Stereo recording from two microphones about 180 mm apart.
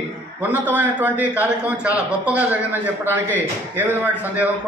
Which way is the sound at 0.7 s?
10° right (ahead or behind).